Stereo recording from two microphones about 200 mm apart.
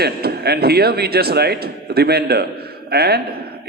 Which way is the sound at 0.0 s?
50° right (ahead or behind).